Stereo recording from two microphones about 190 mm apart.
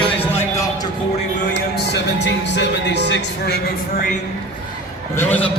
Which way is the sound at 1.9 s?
65° left (ahead or behind).